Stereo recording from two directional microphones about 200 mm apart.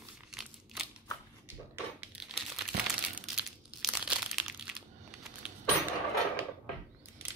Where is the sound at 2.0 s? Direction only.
5° right (ahead or behind).